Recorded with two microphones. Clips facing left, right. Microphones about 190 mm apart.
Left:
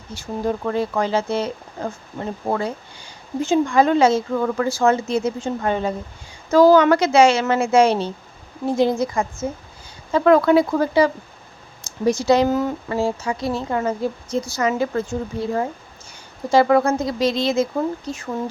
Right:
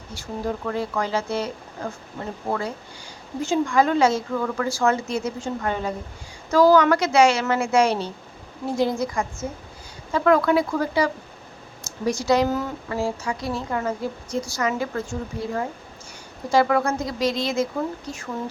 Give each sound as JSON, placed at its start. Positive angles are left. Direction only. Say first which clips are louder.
{"t": 0.1, "sound": "a woman's voice", "louder": "left 4 dB", "side_deg": 25}